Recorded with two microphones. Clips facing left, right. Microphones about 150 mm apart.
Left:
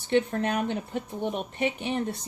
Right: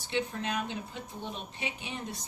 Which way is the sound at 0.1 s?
55° left (ahead or behind).